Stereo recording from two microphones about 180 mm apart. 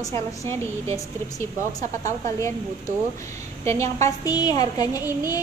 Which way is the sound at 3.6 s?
15° left (ahead or behind).